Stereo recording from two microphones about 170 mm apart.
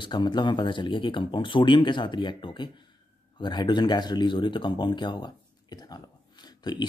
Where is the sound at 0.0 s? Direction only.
25° left (ahead or behind).